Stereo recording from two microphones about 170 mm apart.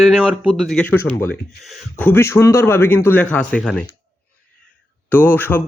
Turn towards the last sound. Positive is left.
turn(degrees=10)  # may be behind; listen again after turning